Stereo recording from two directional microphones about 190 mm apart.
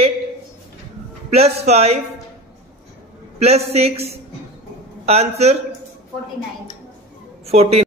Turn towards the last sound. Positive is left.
turn(degrees=-35)  # may be behind; listen again after turning